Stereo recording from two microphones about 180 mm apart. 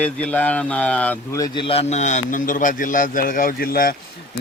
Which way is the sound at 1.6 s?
35° left (ahead or behind).